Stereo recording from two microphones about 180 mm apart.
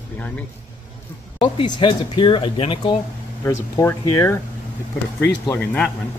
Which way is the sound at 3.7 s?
15° left (ahead or behind).